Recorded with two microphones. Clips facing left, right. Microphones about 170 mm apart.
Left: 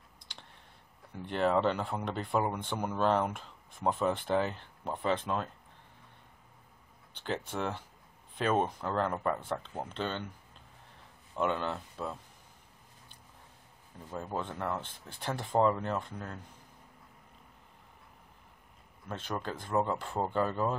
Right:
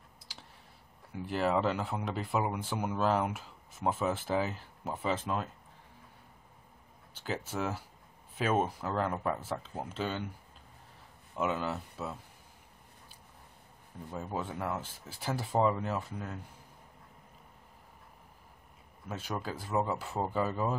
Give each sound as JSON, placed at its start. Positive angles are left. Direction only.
{"t": 0.3, "sound": "clicking", "side_deg": -5}
{"t": 1.1, "sound": "speech", "side_deg": -5}
{"t": 7.2, "sound": "speech", "side_deg": -5}
{"t": 11.3, "sound": "speech", "side_deg": -5}
{"t": 14.1, "sound": "speech", "side_deg": -5}
{"t": 19.0, "sound": "speech", "side_deg": -5}